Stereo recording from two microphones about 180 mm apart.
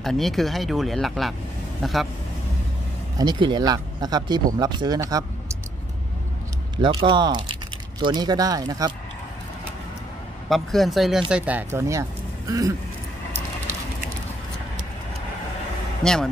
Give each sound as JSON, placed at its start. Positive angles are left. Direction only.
{"t": 0.0, "sound": "speech", "side_deg": 0}
{"t": 3.2, "sound": "speech", "side_deg": -25}
{"t": 6.8, "sound": "speech", "side_deg": -25}
{"t": 10.5, "sound": "speech", "side_deg": 0}
{"t": 16.0, "sound": "speech", "side_deg": 5}